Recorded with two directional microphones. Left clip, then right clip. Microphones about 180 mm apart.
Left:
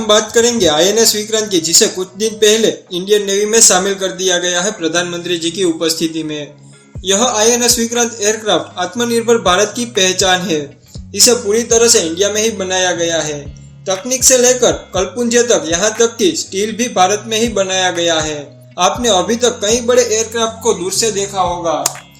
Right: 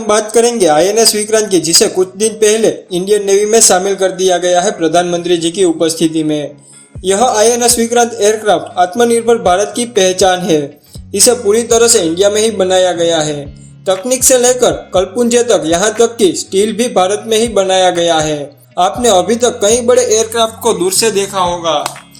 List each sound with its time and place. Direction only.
0.1 s a man's voice: 10° right (ahead or behind)
11.4 s speech: 25° right (ahead or behind)
20.8 s a man's voice: 50° right (ahead or behind)